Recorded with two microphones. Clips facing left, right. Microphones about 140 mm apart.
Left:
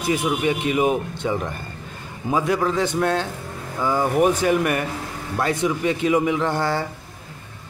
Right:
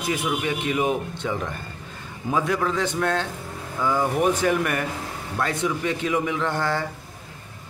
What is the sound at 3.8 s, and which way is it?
Speech, 25° left (ahead or behind).